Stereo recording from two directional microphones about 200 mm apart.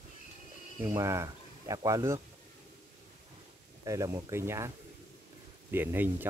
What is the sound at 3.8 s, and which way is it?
Speech, 15° right (ahead or behind).